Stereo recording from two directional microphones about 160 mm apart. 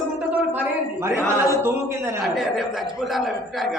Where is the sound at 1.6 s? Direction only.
15° right (ahead or behind).